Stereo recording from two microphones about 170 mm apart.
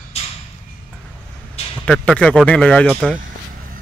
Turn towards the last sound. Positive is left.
turn(degrees=5)  # may be behind; listen again after turning